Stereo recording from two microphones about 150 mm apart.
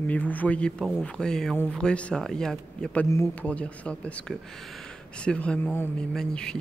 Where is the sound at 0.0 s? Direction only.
10° left (ahead or behind).